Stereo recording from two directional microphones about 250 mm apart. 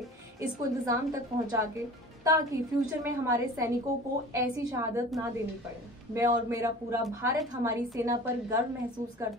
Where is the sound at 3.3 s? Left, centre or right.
Centre.